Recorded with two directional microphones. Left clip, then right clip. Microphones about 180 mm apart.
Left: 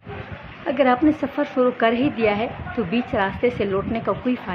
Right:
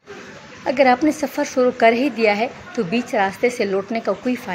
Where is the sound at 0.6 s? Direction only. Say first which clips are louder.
Right 4 dB; 15° right (ahead or behind).